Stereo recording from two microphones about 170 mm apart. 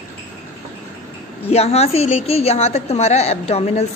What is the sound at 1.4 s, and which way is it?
A woman's voice, 35° left (ahead or behind).